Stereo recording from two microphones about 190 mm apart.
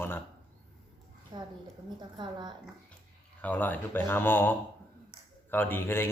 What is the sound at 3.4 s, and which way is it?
Speech, 10° left (ahead or behind).